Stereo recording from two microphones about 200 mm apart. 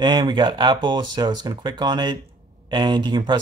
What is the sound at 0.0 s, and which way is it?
Speech, 20° right (ahead or behind).